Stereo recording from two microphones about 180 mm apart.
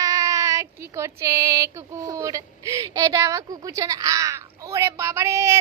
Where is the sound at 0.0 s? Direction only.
20° right (ahead or behind).